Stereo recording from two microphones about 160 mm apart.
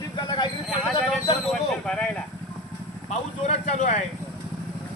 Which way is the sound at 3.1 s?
45° left (ahead or behind).